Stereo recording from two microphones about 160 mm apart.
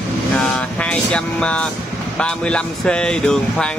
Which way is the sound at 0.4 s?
5° left (ahead or behind).